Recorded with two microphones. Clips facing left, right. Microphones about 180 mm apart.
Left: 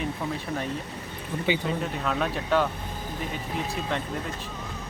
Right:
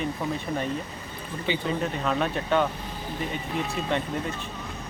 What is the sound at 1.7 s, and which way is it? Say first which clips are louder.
Speech: right 2 dB; centre (ahead or behind).